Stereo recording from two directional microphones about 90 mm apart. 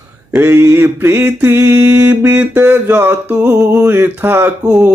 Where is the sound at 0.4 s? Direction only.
25° right (ahead or behind).